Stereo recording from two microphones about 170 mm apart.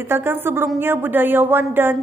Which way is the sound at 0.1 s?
10° right (ahead or behind).